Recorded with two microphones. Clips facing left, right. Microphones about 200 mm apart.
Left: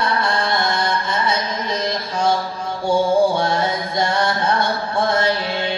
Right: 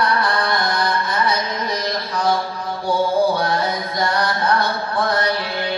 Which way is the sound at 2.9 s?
25° left (ahead or behind).